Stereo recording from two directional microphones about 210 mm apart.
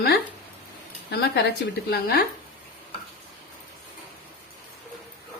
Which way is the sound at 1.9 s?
45° left (ahead or behind).